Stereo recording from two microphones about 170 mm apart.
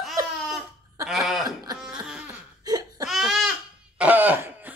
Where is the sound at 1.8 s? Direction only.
5° right (ahead or behind).